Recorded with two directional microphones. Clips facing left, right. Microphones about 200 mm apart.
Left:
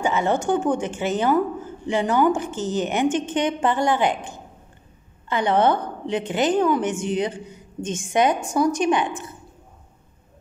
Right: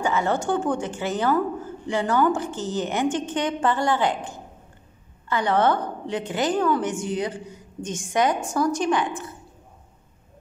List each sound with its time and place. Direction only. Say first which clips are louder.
0.0 s speech: left 2 dB; 20° left (ahead or behind)
5.3 s speech: left 2 dB; 20° left (ahead or behind)